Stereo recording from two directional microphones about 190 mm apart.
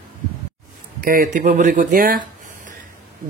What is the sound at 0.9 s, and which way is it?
Speech, 50° right (ahead or behind).